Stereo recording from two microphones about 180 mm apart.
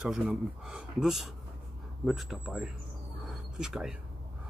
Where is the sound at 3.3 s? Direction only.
Centre (ahead or behind).